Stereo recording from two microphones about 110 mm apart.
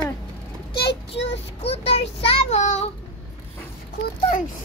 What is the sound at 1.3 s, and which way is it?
Child singing, 70° left (ahead or behind).